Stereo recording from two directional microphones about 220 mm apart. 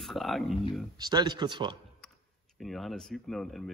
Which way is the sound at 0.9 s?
20° right (ahead or behind).